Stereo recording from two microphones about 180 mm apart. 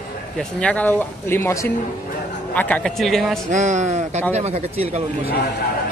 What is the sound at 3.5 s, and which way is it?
A man's voice, 40° right (ahead or behind).